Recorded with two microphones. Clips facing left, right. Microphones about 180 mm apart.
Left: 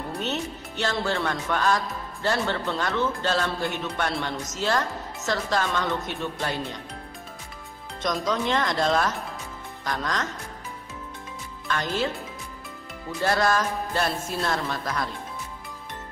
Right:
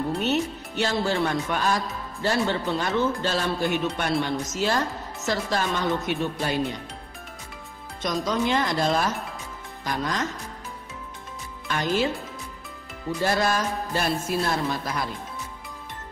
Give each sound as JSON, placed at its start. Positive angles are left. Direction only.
{"t": 0.2, "sound": "speech", "side_deg": -10}
{"t": 8.0, "sound": "speech", "side_deg": -5}
{"t": 11.6, "sound": "speech", "side_deg": -15}
{"t": 13.2, "sound": "speech", "side_deg": -15}